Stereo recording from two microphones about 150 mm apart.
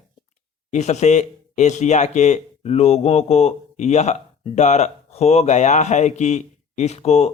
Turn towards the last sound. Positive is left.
turn(degrees=45)  # may be behind; listen again after turning